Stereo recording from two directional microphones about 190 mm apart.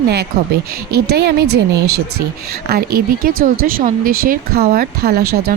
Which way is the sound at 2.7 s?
55° right (ahead or behind).